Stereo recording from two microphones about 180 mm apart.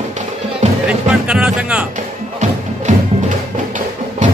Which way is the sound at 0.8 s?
5° right (ahead or behind).